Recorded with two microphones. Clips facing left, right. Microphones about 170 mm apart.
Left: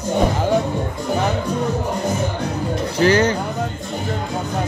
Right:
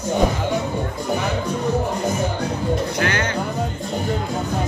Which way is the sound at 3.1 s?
35° left (ahead or behind).